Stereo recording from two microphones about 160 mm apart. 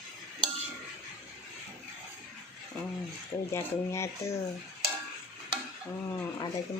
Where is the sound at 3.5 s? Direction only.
15° left (ahead or behind).